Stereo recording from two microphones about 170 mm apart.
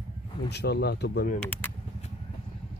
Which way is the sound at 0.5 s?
80° left.